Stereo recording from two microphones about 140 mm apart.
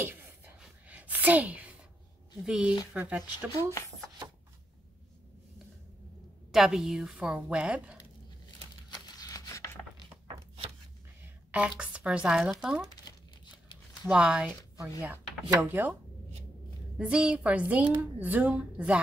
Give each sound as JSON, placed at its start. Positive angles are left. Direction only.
{"t": 0.0, "sound": "a sound", "side_deg": -15}
{"t": 2.4, "sound": "a woman's voice", "side_deg": -5}
{"t": 6.5, "sound": "a woman's voice", "side_deg": -5}
{"t": 8.9, "sound": "a sound", "side_deg": 25}
{"t": 11.5, "sound": "a woman's voice", "side_deg": -10}
{"t": 14.0, "sound": "a woman's voice", "side_deg": -5}
{"t": 17.0, "sound": "a woman's voice", "side_deg": -5}